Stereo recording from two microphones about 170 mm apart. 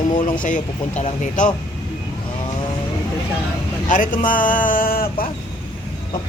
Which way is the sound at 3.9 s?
50° left (ahead or behind).